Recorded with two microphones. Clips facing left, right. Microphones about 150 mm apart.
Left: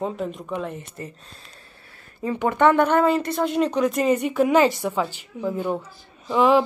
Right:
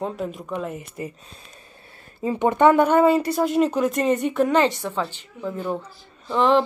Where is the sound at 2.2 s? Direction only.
20° right (ahead or behind).